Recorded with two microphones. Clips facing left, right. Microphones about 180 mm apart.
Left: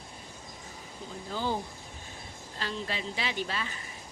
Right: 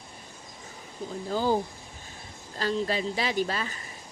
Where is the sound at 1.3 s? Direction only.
40° right (ahead or behind).